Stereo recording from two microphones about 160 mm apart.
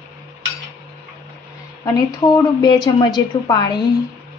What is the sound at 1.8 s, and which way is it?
A woman's voice, 20° left (ahead or behind).